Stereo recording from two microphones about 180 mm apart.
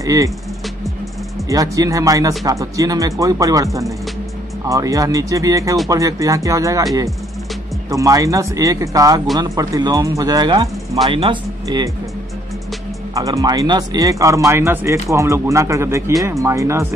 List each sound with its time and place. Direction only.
0.0 s speech: 20° right (ahead or behind)
1.5 s speech: 20° right (ahead or behind)
7.9 s speech: 20° right (ahead or behind)
13.1 s speech: 20° right (ahead or behind)